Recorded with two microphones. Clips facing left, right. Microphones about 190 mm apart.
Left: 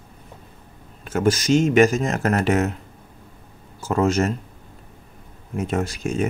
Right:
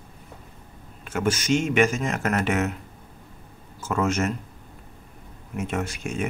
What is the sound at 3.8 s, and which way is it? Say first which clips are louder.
Speech: left 4 dB; 35° left (ahead or behind).